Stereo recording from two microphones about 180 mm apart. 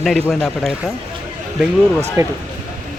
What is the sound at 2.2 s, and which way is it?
Speech, 20° right (ahead or behind).